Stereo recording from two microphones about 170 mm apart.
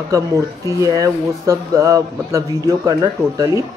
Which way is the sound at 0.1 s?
20° right (ahead or behind).